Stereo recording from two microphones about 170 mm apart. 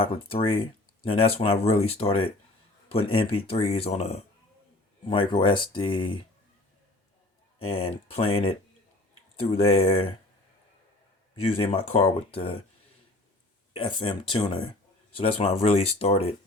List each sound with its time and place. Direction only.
0.0 s speech: 35° left (ahead or behind)
7.6 s speech: 35° left (ahead or behind)
11.3 s speech: 35° left (ahead or behind)
13.7 s speech: 30° left (ahead or behind)